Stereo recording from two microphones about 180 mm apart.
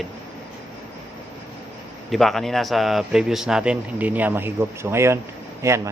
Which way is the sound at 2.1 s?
Centre (ahead or behind).